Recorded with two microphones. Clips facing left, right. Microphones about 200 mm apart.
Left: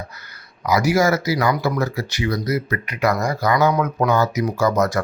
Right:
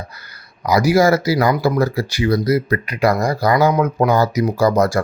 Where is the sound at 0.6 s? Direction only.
35° right (ahead or behind).